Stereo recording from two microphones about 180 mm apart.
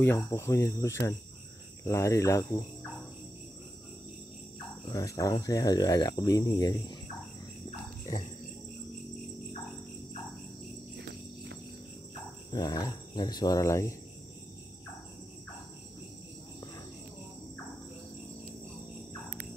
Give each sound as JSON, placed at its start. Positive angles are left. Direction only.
{"t": 0.0, "sound": "cricket", "side_deg": 15}
{"t": 4.8, "sound": "speech", "side_deg": 20}
{"t": 11.0, "sound": "cricket", "side_deg": -70}
{"t": 12.4, "sound": "speech", "side_deg": 20}